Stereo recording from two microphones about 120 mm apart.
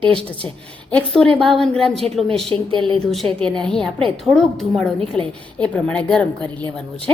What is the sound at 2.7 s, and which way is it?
Speech, 45° right (ahead or behind).